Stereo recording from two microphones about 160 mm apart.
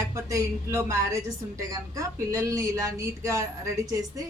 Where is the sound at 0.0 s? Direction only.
20° right (ahead or behind).